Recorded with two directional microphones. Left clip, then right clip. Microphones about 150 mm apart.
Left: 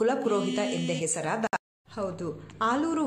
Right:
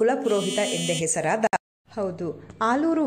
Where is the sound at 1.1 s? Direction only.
25° right (ahead or behind).